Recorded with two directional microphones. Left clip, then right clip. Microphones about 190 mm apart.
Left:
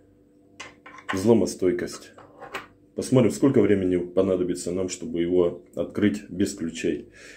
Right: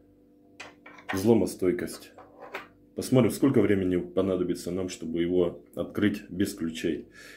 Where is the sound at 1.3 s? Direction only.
10° right (ahead or behind).